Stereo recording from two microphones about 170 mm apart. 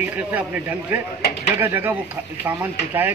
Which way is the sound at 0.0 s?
10° right (ahead or behind).